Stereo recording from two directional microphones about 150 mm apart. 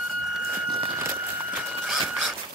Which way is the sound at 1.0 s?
15° right (ahead or behind).